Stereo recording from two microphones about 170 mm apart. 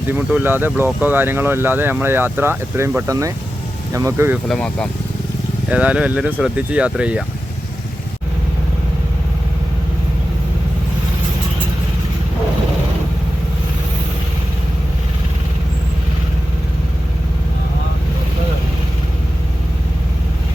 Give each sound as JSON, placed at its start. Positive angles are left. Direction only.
{"t": 0.1, "sound": "speech", "side_deg": -10}
{"t": 4.4, "sound": "speech", "side_deg": 5}
{"t": 5.6, "sound": "speech", "side_deg": -5}